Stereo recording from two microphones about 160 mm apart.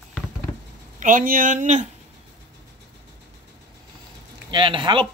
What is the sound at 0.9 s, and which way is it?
Speech, 55° right (ahead or behind).